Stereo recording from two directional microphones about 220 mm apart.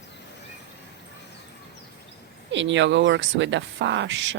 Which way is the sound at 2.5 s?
55° right (ahead or behind).